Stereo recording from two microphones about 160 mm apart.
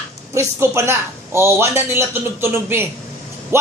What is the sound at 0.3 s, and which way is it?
A man's voice, 15° right (ahead or behind).